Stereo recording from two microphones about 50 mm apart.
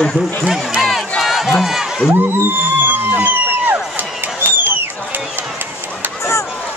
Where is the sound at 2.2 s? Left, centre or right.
Right.